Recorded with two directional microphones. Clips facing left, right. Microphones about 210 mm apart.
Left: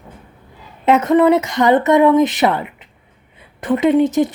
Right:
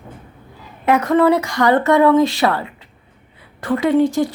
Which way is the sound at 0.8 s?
20° left (ahead or behind).